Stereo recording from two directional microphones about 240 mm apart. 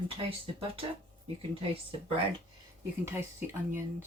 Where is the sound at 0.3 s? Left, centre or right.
Right.